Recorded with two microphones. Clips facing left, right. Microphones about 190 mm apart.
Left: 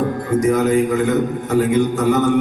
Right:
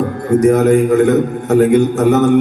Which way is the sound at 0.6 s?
55° right (ahead or behind).